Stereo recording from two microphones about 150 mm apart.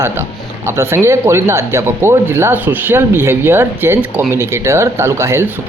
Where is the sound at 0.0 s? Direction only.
15° right (ahead or behind).